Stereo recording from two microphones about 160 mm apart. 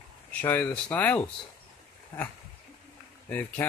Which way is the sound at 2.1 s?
25° left (ahead or behind).